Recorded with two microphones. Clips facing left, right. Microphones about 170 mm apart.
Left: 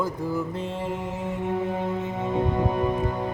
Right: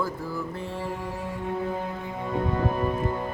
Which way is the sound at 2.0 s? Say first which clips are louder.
Left 4 dB; 20° left (ahead or behind).